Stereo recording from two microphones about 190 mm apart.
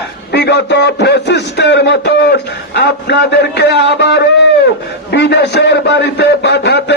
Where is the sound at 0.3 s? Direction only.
60° left (ahead or behind).